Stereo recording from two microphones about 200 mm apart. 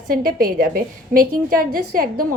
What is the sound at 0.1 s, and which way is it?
A woman's voice, 45° right (ahead or behind).